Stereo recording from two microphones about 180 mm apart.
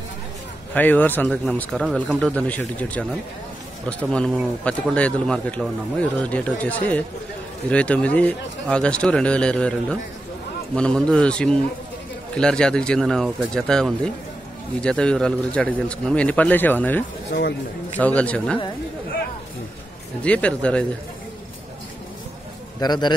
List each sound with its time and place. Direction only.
0.7 s speech: 10° left (ahead or behind)
17.3 s a man's voice: 70° left (ahead or behind)
17.9 s speech: 10° left (ahead or behind)
20.2 s speech: 5° left (ahead or behind)
22.8 s a man's voice: 25° left (ahead or behind)